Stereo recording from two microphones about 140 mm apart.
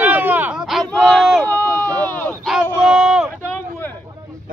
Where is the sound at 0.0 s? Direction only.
10° right (ahead or behind).